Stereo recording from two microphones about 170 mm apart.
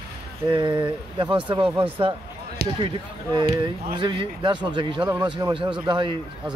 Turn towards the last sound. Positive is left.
turn(degrees=-25)  # may be behind; listen again after turning